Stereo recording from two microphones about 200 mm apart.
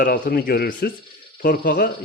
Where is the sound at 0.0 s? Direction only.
45° left (ahead or behind).